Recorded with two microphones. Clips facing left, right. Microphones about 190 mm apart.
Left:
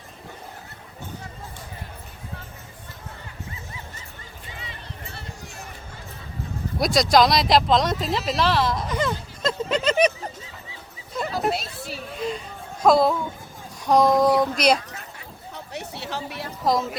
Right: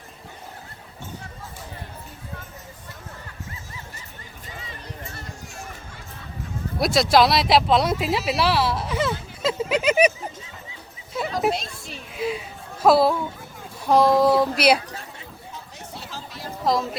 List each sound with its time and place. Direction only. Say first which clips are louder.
6.7 s speech: even; centre (ahead or behind)
11.3 s a sound: right 2 dB; 5° left (ahead or behind)
12.1 s a sound: right 3 dB; 5° right (ahead or behind)
13.8 s a woman's voice: right 1 dB; 5° right (ahead or behind)
15.7 s chatter: left 8 dB; 70° left (ahead or behind)
16.6 s speech: even; centre (ahead or behind)